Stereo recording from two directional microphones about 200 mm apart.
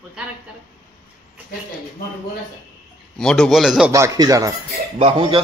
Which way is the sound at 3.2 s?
5° left (ahead or behind).